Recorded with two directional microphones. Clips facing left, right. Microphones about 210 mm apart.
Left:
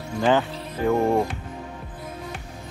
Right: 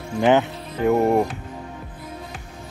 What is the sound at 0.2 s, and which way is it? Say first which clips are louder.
Speech: right 3 dB; 20° right (ahead or behind).